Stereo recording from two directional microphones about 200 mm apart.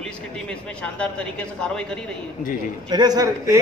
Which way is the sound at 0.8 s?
5° left (ahead or behind).